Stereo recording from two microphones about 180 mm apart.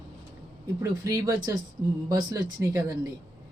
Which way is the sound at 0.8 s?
20° right (ahead or behind).